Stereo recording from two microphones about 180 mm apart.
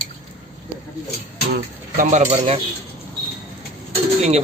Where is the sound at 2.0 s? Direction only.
40° right (ahead or behind).